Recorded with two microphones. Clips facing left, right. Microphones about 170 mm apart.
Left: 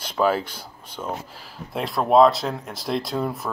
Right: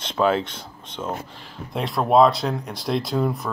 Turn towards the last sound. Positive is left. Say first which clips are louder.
# right 3 dB
turn(degrees=0)  # may be behind; listen again after turning